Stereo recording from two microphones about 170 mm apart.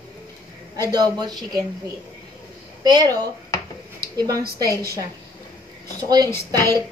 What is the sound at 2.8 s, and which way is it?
A child's voice, 20° right (ahead or behind).